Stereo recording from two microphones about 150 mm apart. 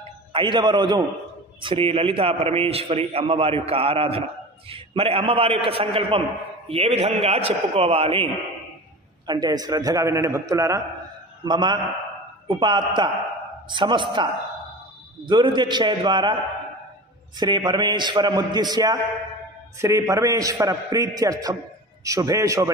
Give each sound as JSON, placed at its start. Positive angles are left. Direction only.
{"t": 0.3, "sound": "a man's voice", "side_deg": -35}
{"t": 9.2, "sound": "a man's voice", "side_deg": -25}
{"t": 15.2, "sound": "a man's voice", "side_deg": -30}
{"t": 17.4, "sound": "a man's voice", "side_deg": -30}